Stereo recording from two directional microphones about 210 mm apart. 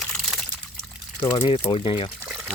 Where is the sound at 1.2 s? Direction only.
25° left (ahead or behind).